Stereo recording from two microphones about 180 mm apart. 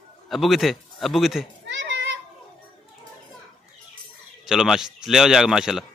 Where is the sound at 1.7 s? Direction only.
85° right.